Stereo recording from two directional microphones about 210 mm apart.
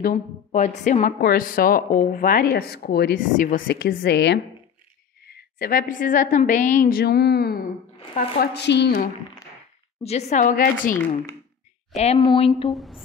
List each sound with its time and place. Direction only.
0.0 s a woman's voice: 35° left (ahead or behind); by 8.9 s 55° left (ahead or behind)
10.0 s a woman's voice: 35° left (ahead or behind)
11.9 s speech: 30° left (ahead or behind)
12.7 s speech: centre (ahead or behind)